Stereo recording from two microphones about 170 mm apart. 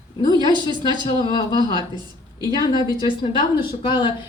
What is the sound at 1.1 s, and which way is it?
Speech, 25° left (ahead or behind).